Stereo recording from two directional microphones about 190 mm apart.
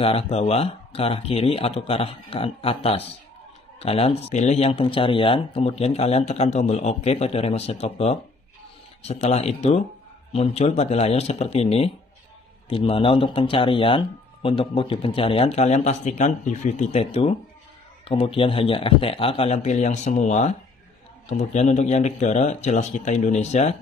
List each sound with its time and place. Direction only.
0.0 s speech: 30° left (ahead or behind)